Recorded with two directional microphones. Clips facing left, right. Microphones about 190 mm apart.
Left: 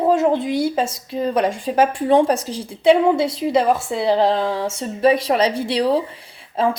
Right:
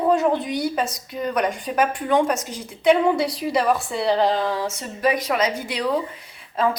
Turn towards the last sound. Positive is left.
turn(degrees=30)  # may be behind; listen again after turning